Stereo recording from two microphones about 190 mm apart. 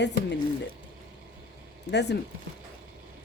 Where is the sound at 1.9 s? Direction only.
65° left (ahead or behind).